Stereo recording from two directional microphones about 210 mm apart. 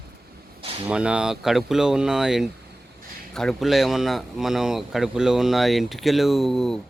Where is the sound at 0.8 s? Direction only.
5° right (ahead or behind).